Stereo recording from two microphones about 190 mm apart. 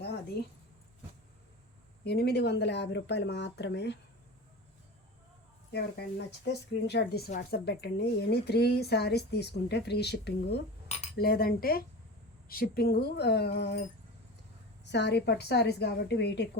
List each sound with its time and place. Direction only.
0.4 s a woman's voice: 60° left (ahead or behind)
2.0 s a woman's voice: 60° left (ahead or behind)
5.7 s a woman's voice: 60° left (ahead or behind)
7.3 s speech: 40° left (ahead or behind)
7.6 s a woman's voice: 55° left (ahead or behind)
10.8 s cutlery: 35° left (ahead or behind)
11.2 s a woman's voice: 50° left (ahead or behind)
14.8 s a woman's voice: 65° left (ahead or behind)